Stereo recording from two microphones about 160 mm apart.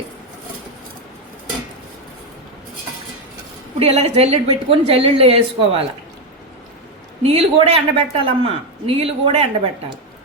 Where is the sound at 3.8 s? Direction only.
40° right (ahead or behind).